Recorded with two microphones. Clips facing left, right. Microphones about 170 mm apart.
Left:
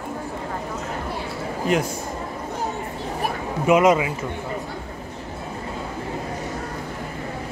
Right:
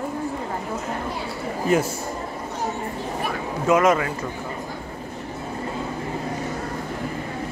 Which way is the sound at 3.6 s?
15° left (ahead or behind).